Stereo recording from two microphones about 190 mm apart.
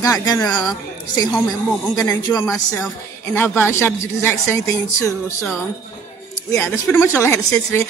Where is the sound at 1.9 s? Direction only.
20° left (ahead or behind).